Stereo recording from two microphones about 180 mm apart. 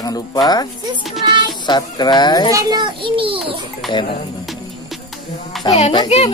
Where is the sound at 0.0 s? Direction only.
20° left (ahead or behind).